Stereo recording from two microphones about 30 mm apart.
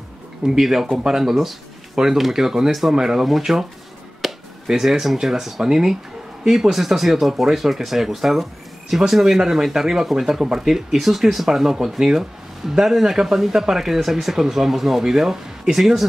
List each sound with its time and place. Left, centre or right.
0.5 s speech: centre
3.5 s speech: centre
4.2 s chop: centre
4.6 s speech: centre